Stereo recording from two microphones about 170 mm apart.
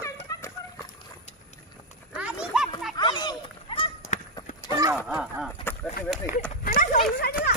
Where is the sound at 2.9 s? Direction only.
25° left (ahead or behind).